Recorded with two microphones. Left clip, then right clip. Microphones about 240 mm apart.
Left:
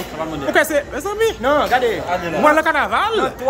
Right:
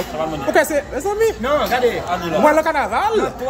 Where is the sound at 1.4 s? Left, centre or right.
Centre.